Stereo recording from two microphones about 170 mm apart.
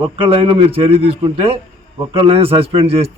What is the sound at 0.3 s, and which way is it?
A man's voice, 35° right (ahead or behind).